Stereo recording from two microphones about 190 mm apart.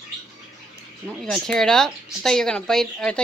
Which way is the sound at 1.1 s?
Centre (ahead or behind).